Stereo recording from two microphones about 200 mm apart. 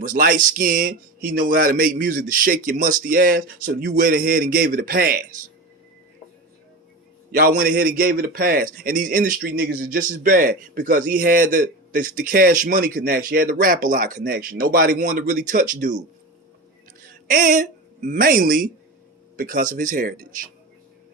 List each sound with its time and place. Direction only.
0.0 s a man's voice: 45° right (ahead or behind)
7.2 s a man's voice: 45° right (ahead or behind)
17.0 s a man's voice: 40° right (ahead or behind)